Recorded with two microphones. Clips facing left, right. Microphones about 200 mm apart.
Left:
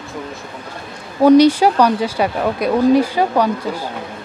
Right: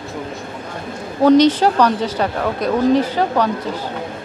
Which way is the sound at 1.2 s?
10° left (ahead or behind).